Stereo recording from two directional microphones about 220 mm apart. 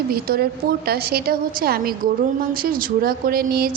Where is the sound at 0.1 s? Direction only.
45° right (ahead or behind).